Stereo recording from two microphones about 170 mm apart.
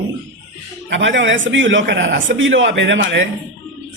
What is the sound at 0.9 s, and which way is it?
A man's voice, 90° right.